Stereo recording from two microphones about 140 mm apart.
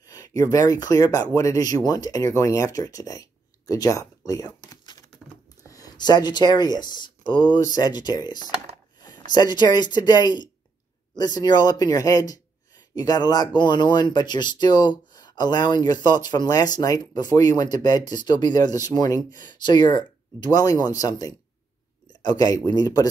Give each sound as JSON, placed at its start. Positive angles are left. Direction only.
{"t": 0.0, "sound": "speech", "side_deg": 25}
{"t": 4.3, "sound": "a sound", "side_deg": 25}
{"t": 5.7, "sound": "speech", "side_deg": 25}